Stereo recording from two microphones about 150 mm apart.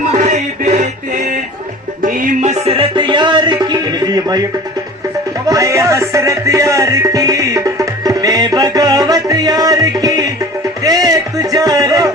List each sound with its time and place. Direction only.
0.2 s music: 50° right (ahead or behind)
2.0 s music: 65° right (ahead or behind); by 4.4 s 25° right (ahead or behind)
5.5 s music: 20° right (ahead or behind)